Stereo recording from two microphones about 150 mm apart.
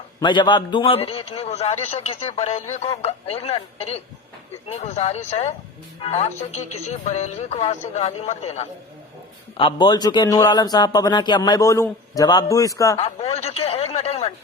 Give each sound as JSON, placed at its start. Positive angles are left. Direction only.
{"t": 0.2, "sound": "a man's voice", "side_deg": 30}
{"t": 9.6, "sound": "a man's voice", "side_deg": 30}
{"t": 13.2, "sound": "a sound", "side_deg": 45}